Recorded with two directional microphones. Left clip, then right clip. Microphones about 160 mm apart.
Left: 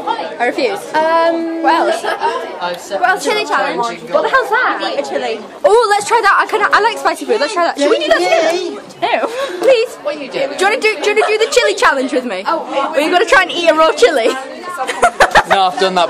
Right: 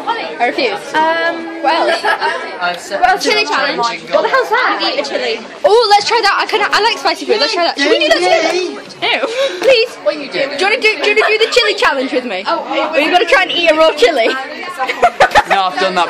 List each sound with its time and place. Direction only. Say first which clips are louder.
0.4 s a woman's voice: right 1 dB; 10° left (ahead or behind)
0.9 s a sound: left 2 dB; 50° left (ahead or behind)
1.6 s speech: even; 10° left (ahead or behind)
3.3 s a woman's voice: right 1 dB; 15° left (ahead or behind)
4.2 s speech: even; 25° right (ahead or behind)
4.7 s a woman's voice: right 2 dB; 20° left (ahead or behind)
5.6 s a woman's voice: right 1 dB; 5° left (ahead or behind)
9.0 s speech: right 1 dB; 45° left (ahead or behind)
10.0 s a woman's voice: right 2 dB; 20° left (ahead or behind)
14.9 s a sound: even; 10° left (ahead or behind)
15.6 s speech: left 1 dB; 65° left (ahead or behind)